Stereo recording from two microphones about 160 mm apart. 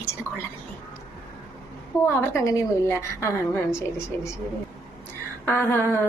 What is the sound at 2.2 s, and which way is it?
Speech, 20° left (ahead or behind).